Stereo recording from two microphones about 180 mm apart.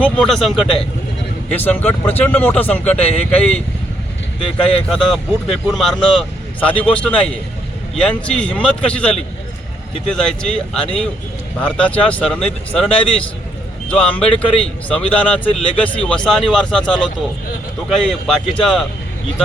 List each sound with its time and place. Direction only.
0.0 s speech: 5° left (ahead or behind)
4.4 s speech: 30° left (ahead or behind)
4.9 s speech: centre (ahead or behind)
13.9 s speech: 5° left (ahead or behind)